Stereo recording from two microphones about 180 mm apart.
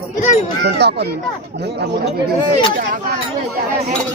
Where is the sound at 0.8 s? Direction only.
65° right (ahead or behind).